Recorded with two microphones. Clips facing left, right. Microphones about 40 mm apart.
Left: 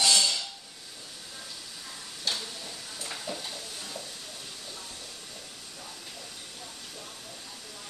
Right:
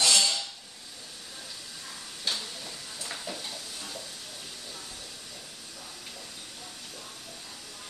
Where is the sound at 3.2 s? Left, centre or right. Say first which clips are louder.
Left 1 dB; centre.